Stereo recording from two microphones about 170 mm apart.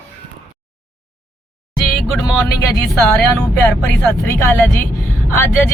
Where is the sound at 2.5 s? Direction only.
20° left (ahead or behind).